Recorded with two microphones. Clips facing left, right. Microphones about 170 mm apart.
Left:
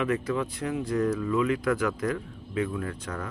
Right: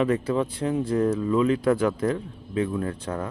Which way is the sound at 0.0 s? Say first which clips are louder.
Right 4 dB; 30° right (ahead or behind).